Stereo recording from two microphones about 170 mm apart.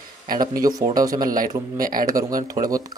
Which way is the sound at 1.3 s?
55° right (ahead or behind).